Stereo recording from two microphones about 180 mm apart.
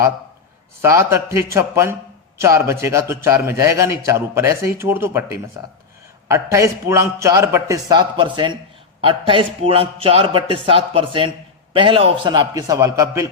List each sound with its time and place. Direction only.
0.8 s a man's voice: 15° right (ahead or behind)